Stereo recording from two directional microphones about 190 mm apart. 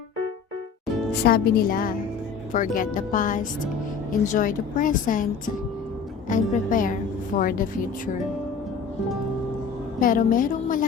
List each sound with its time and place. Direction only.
1.2 s speech: 55° left (ahead or behind)
6.2 s speech: 45° left (ahead or behind)
10.0 s speech: 45° left (ahead or behind)